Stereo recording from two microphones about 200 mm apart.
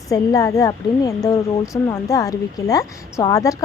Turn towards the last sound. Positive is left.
turn(degrees=15)  # may be behind; listen again after turning